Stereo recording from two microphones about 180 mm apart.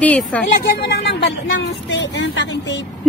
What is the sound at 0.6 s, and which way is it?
Speech, 60° left (ahead or behind).